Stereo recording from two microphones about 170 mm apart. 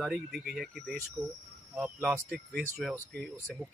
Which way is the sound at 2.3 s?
65° right (ahead or behind).